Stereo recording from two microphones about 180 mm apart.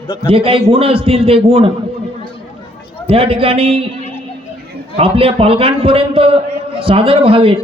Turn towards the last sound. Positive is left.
turn(degrees=-30)  # may be behind; listen again after turning